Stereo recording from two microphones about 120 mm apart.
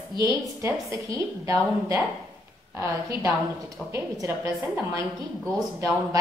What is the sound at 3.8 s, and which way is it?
Speech, centre (ahead or behind).